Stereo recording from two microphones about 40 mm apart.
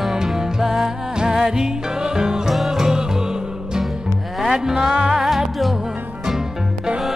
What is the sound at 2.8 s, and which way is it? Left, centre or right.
Music, centre.